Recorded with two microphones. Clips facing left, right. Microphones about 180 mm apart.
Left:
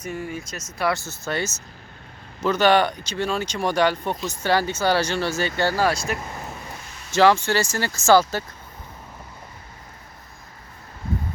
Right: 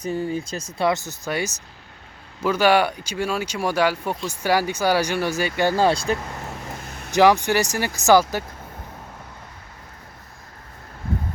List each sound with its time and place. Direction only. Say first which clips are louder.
0.0 s speech: right 5 dB; 30° right (ahead or behind)
0.9 s speech: right 1 dB; 15° right (ahead or behind)
7.1 s speech: right 1 dB; 15° right (ahead or behind)